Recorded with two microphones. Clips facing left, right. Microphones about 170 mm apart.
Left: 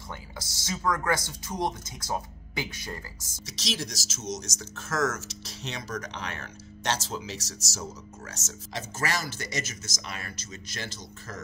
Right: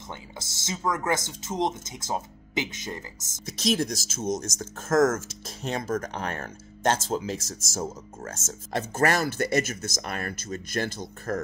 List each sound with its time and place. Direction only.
0.1 s speech: 20° right (ahead or behind)
3.4 s speech: 55° right (ahead or behind)